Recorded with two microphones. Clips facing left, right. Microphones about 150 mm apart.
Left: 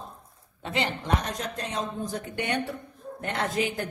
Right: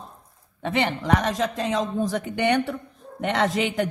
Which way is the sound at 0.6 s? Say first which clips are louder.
Right 5 dB; 60° right (ahead or behind).